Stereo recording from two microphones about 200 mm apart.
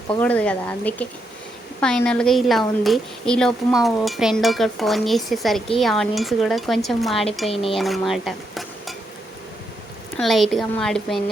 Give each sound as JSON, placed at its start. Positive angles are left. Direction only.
{"t": 0.2, "sound": "a woman's voice", "side_deg": 5}
{"t": 7.5, "sound": "speech", "side_deg": 30}
{"t": 7.8, "sound": "cutlery", "side_deg": 0}
{"t": 10.2, "sound": "a woman's voice", "side_deg": 0}